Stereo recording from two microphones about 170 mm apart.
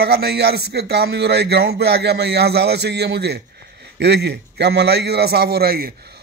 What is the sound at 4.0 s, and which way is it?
A man's voice, 85° right.